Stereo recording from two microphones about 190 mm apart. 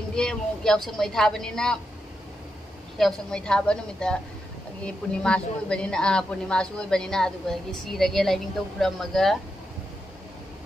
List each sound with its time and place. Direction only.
0.1 s a woman's voice: 5° left (ahead or behind)
3.0 s a woman's voice: 5° left (ahead or behind)